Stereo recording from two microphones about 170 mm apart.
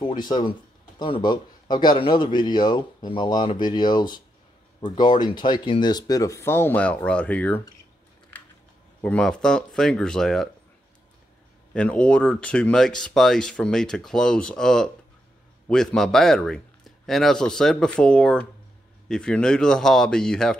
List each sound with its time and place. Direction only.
0.0 s speech: 25° left (ahead or behind); by 7.6 s 10° left (ahead or behind)
9.0 s speech: 5° left (ahead or behind)
11.7 s speech: 5° left (ahead or behind)